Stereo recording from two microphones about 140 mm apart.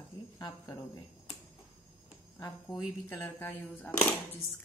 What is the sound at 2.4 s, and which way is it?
Speech, 25° left (ahead or behind).